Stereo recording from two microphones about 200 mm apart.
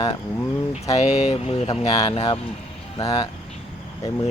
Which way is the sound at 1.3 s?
30° left (ahead or behind).